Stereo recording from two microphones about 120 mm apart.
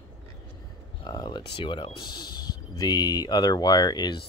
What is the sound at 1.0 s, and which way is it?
Speech, 35° left (ahead or behind).